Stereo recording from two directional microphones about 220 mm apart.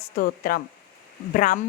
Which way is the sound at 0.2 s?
40° left (ahead or behind).